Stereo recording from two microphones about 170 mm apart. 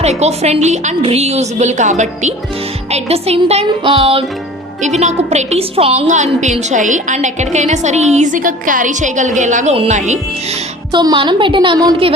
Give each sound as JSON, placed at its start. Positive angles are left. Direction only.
{"t": 0.0, "sound": "a woman's voice", "side_deg": -40}
{"t": 10.9, "sound": "a woman's voice", "side_deg": -25}